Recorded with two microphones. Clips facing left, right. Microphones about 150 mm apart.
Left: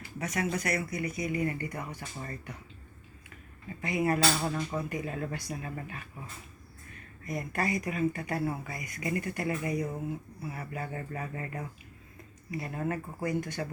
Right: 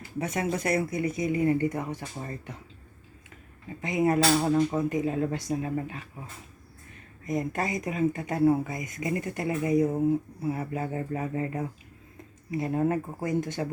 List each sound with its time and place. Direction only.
0.2 s speech: 25° right (ahead or behind)
3.8 s speech: 20° right (ahead or behind)
7.3 s speech: 20° right (ahead or behind)